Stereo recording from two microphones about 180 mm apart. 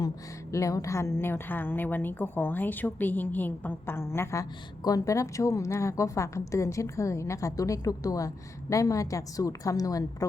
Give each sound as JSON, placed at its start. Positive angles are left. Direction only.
{"t": 0.5, "sound": "a woman's voice", "side_deg": 15}